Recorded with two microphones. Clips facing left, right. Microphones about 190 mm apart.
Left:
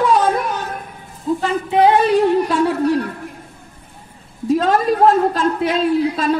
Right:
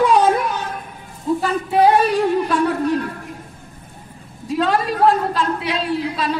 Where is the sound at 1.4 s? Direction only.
20° left (ahead or behind).